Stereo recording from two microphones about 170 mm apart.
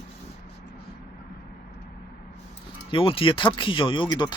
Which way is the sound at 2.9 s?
30° left (ahead or behind).